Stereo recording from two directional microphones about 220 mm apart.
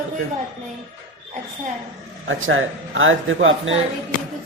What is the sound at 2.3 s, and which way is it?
Speech, 60° right (ahead or behind).